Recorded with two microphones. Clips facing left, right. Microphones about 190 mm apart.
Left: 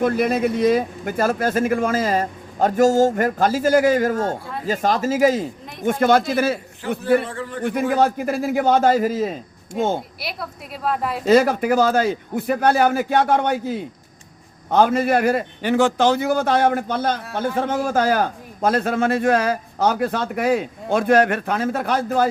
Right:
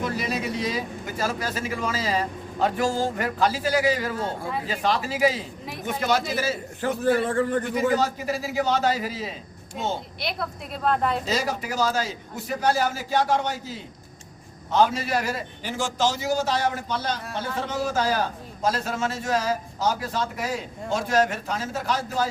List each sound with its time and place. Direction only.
0.0 s a man's voice: 55° left (ahead or behind)
6.8 s a man's voice: 45° right (ahead or behind)
7.6 s speech: 55° left (ahead or behind)
10.2 s a woman's voice: 5° left (ahead or behind)
11.3 s a man's voice: 55° left (ahead or behind)